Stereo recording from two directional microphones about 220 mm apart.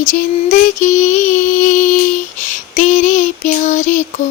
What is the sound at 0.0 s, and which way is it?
Female singing, 35° left (ahead or behind).